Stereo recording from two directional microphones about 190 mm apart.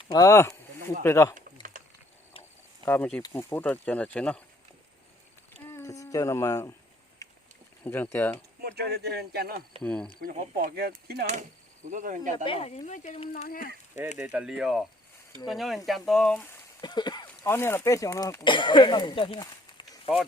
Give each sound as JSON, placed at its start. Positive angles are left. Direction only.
{"t": 0.1, "sound": "speech", "side_deg": 15}
{"t": 1.7, "sound": "a sound", "side_deg": -45}
{"t": 2.8, "sound": "speech", "side_deg": 10}
{"t": 5.6, "sound": "a sound", "side_deg": 15}
{"t": 7.9, "sound": "speech", "side_deg": 10}
{"t": 8.6, "sound": "speech", "side_deg": -55}
{"t": 9.8, "sound": "speech", "side_deg": 5}
{"t": 10.2, "sound": "speech", "side_deg": -50}
{"t": 11.9, "sound": "speech", "side_deg": -40}
{"t": 12.5, "sound": "speech", "side_deg": 30}
{"t": 14.2, "sound": "speech", "side_deg": -10}
{"t": 16.8, "sound": "a sound", "side_deg": 20}
{"t": 17.2, "sound": "speech", "side_deg": 10}